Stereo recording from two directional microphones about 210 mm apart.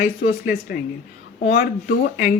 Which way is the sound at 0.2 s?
45° left (ahead or behind).